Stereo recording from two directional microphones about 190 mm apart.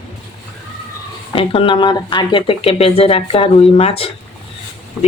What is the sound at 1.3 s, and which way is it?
Speech, 25° left (ahead or behind).